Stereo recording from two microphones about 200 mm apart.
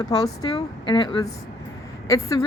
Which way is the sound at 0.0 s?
20° left (ahead or behind).